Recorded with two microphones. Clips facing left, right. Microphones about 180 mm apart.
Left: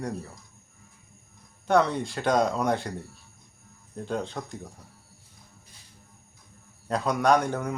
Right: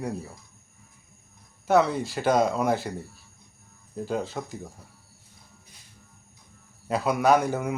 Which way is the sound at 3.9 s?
5° right (ahead or behind).